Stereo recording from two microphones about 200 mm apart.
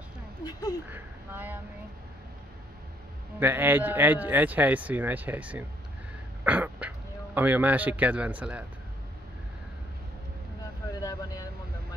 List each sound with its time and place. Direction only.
0.4 s speech: 20° left (ahead or behind)
0.8 s speech: 10° right (ahead or behind)
3.3 s speech: 10° right (ahead or behind)
6.4 s throat clearing: 10° right (ahead or behind)
7.3 s speech: 10° right (ahead or behind)
10.9 s vehicle: 20° left (ahead or behind)